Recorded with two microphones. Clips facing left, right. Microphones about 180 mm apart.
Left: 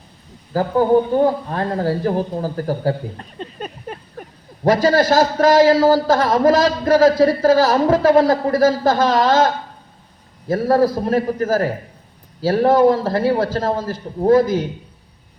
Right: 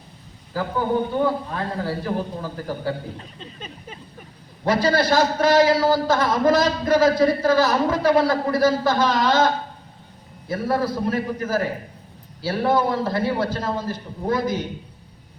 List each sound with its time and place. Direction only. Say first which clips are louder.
0.5 s speech: left 8 dB; 40° left (ahead or behind)
3.3 s a sound: left 8 dB; 55° left (ahead or behind)
4.6 s a man's voice: left 5 dB; 45° left (ahead or behind)
10.5 s speech: left 7 dB; 40° left (ahead or behind)